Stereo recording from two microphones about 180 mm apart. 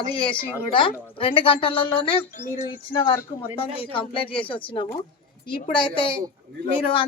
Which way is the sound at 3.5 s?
30° left (ahead or behind).